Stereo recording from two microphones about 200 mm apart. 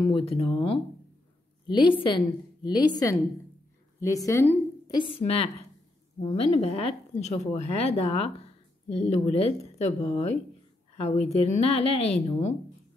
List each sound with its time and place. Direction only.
0.0 s a woman's voice: 30° left (ahead or behind)
11.0 s speech: 30° left (ahead or behind)